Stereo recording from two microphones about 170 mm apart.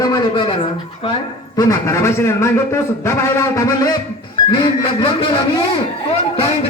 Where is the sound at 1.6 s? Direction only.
20° left (ahead or behind).